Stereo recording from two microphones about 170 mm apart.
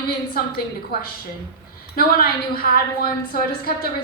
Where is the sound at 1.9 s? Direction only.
65° left (ahead or behind).